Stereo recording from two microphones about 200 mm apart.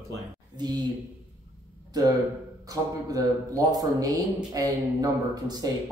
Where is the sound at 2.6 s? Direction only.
20° right (ahead or behind).